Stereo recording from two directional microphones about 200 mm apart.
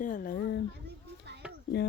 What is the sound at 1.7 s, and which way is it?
Speech, 55° left (ahead or behind).